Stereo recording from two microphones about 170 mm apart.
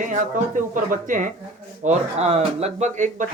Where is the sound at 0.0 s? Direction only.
50° right (ahead or behind).